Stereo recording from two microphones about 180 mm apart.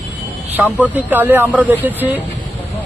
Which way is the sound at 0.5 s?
10° right (ahead or behind).